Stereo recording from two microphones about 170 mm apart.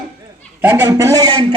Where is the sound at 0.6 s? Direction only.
10° right (ahead or behind).